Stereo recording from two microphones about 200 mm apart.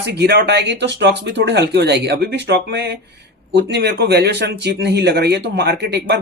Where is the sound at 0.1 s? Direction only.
55° right (ahead or behind).